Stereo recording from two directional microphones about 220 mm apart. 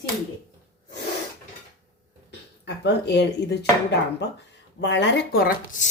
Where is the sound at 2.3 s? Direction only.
50° left (ahead or behind).